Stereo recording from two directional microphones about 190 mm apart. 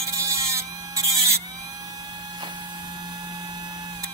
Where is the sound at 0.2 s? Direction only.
15° right (ahead or behind).